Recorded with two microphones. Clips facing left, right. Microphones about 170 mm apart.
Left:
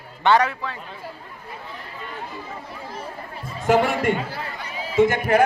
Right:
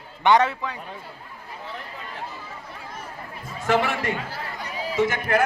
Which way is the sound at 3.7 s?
40° left (ahead or behind).